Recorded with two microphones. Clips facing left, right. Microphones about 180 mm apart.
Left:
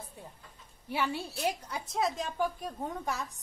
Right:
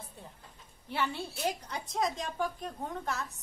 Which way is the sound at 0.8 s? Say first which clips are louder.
Left 1 dB; 10° left (ahead or behind).